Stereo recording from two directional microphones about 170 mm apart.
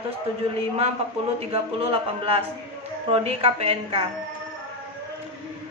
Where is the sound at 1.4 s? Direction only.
35° right (ahead or behind).